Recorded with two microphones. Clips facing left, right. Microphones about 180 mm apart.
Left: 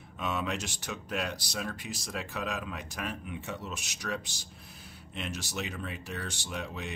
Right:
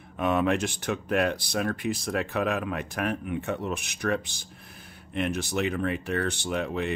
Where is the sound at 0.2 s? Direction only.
55° right (ahead or behind).